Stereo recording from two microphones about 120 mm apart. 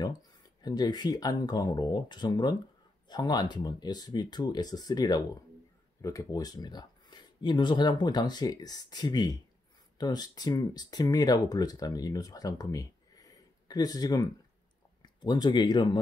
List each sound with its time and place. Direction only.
0.6 s speech: 35° left (ahead or behind)